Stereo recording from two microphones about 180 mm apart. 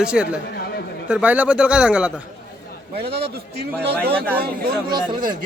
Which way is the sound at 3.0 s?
65° right (ahead or behind).